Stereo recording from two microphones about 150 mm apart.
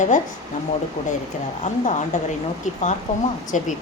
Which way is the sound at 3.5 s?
55° left (ahead or behind).